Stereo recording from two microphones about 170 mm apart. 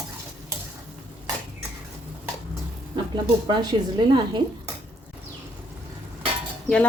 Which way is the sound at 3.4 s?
25° right (ahead or behind).